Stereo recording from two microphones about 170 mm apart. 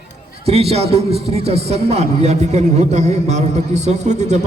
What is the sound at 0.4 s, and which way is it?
A man's voice, 35° right (ahead or behind).